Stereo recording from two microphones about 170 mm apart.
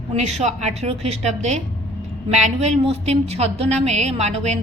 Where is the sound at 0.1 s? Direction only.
40° right (ahead or behind).